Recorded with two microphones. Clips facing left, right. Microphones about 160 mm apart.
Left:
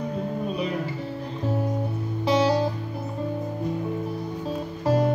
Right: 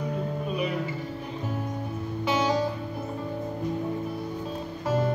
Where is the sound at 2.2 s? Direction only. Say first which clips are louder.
Left 5 dB; 35° left (ahead or behind).